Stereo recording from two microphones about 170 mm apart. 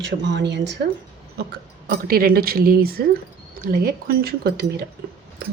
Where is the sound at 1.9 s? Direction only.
60° right (ahead or behind).